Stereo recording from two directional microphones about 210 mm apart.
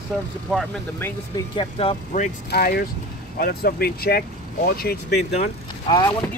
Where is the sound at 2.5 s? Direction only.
45° left (ahead or behind).